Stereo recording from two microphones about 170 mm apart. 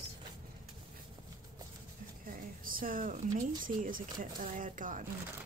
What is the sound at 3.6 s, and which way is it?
Speech, 55° right (ahead or behind).